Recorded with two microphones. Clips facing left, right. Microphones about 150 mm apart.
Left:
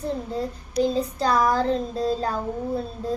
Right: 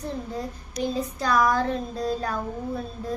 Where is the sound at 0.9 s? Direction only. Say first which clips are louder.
Left 2 dB; 30° left (ahead or behind).